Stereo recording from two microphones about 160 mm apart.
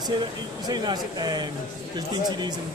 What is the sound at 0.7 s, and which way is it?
Speech, 25° right (ahead or behind).